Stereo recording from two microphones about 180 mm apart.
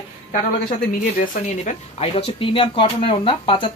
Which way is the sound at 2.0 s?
30° left (ahead or behind).